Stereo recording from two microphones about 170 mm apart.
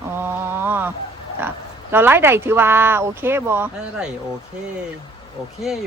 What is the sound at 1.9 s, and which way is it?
Speech, 15° right (ahead or behind).